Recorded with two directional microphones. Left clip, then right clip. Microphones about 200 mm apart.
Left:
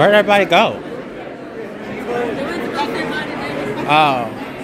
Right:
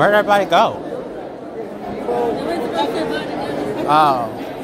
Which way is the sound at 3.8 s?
40° left (ahead or behind).